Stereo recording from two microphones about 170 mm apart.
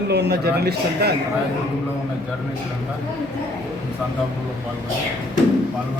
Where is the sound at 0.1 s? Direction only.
80° right.